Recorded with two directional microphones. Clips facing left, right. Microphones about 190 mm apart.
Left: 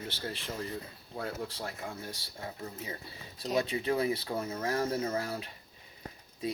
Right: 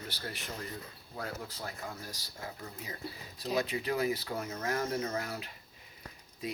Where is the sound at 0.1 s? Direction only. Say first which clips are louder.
Left 3 dB; 25° left (ahead or behind).